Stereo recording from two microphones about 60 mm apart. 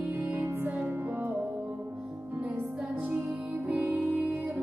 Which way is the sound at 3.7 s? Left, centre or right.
Right.